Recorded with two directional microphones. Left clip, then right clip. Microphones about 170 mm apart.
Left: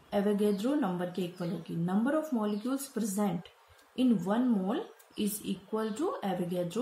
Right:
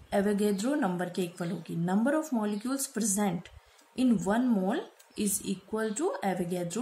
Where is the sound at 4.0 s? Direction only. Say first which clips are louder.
Right 2 dB; 25° right (ahead or behind).